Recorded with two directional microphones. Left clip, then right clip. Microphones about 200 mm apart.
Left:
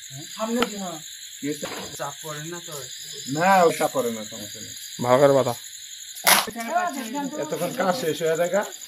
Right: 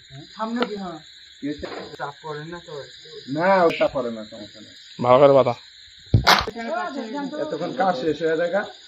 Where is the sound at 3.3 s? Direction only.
40° left (ahead or behind).